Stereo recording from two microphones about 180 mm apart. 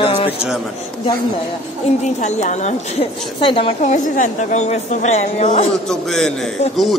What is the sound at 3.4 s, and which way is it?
A woman's voice, 30° left (ahead or behind).